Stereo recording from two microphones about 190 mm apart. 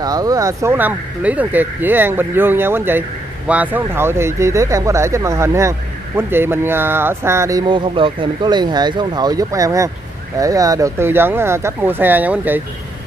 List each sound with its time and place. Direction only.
0.0 s speech: 20° right (ahead or behind)